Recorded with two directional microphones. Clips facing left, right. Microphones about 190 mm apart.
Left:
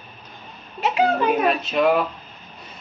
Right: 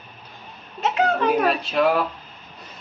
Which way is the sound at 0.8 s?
10° left (ahead or behind).